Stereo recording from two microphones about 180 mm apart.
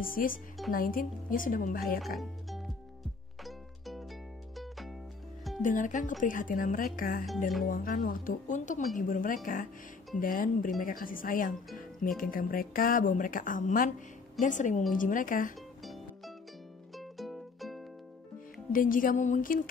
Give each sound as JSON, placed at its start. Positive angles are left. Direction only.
{"t": 0.0, "sound": "speech", "side_deg": 50}
{"t": 2.1, "sound": "music", "side_deg": 0}
{"t": 5.6, "sound": "speech", "side_deg": 45}
{"t": 15.8, "sound": "music", "side_deg": 0}
{"t": 18.7, "sound": "speech", "side_deg": 50}